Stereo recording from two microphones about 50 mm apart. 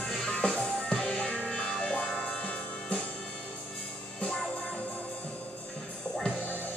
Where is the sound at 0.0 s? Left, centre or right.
Centre.